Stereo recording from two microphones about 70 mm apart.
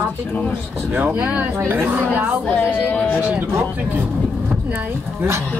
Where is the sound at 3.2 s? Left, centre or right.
Right.